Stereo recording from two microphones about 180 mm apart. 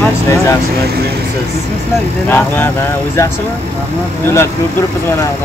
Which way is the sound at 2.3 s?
10° left (ahead or behind).